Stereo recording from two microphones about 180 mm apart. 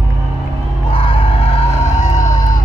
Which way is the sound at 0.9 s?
30° left (ahead or behind).